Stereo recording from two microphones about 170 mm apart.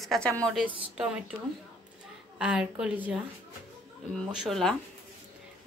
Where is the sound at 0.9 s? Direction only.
5° right (ahead or behind).